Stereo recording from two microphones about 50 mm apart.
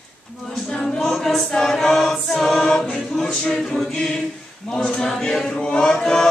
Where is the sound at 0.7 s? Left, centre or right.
Centre.